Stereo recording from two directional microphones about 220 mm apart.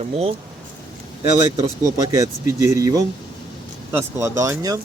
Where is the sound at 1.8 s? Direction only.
15° right (ahead or behind).